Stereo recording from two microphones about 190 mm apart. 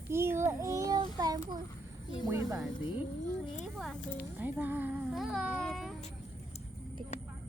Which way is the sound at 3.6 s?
Centre (ahead or behind).